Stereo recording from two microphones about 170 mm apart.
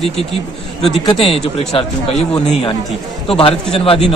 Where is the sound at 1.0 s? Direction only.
35° left (ahead or behind).